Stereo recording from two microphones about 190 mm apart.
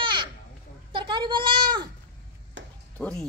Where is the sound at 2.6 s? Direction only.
75° right (ahead or behind).